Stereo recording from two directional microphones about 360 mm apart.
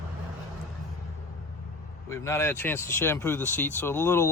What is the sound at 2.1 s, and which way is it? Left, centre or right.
Speech, centre.